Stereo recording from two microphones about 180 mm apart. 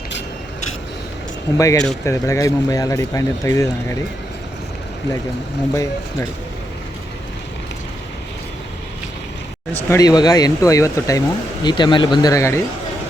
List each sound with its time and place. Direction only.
1.5 s speech: 20° left (ahead or behind)
5.7 s speech: 15° left (ahead or behind)
9.9 s speech: 20° left (ahead or behind)